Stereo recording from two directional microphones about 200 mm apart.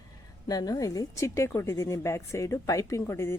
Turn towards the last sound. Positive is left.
turn(degrees=15)  # may be behind; listen again after turning